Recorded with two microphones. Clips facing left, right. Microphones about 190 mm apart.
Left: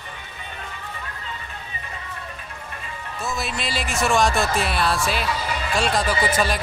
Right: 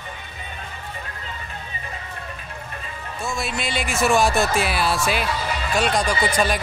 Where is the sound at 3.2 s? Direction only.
Centre (ahead or behind).